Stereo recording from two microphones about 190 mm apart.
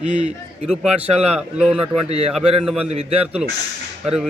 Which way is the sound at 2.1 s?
35° right (ahead or behind).